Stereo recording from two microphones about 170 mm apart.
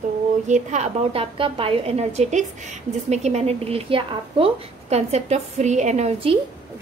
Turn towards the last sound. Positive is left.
turn(degrees=-35)  # may be behind; listen again after turning